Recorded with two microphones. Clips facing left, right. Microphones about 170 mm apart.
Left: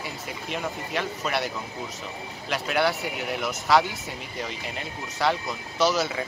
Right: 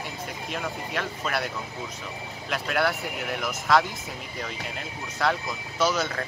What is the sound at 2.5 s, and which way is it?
Speech, centre (ahead or behind).